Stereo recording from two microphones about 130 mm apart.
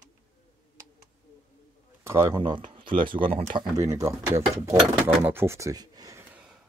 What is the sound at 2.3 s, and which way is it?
Speech, 35° right (ahead or behind).